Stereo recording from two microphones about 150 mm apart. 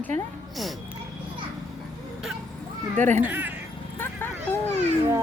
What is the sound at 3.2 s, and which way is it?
Speech, 10° right (ahead or behind).